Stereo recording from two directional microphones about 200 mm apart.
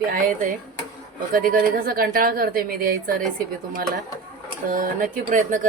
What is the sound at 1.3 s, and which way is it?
Speech, 45° right (ahead or behind).